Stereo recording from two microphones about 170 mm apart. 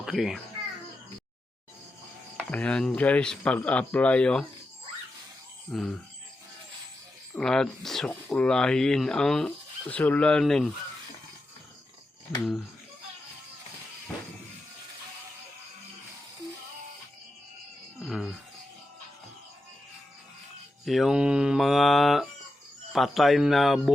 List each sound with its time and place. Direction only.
0.0 s a child's voice: centre (ahead or behind)
2.4 s speech: 5° left (ahead or behind)
5.7 s speech: centre (ahead or behind)
7.3 s speech: 5° left (ahead or behind)
18.0 s music: centre (ahead or behind)
20.8 s speech: centre (ahead or behind)